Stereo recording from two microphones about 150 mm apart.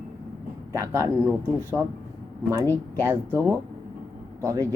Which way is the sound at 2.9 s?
15° right (ahead or behind).